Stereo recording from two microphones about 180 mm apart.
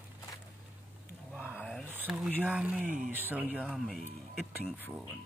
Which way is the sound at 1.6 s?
Centre (ahead or behind).